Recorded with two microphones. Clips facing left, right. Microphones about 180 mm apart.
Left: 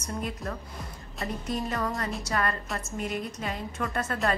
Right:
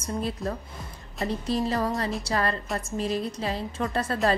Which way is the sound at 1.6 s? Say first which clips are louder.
Right 4 dB; 30° right (ahead or behind).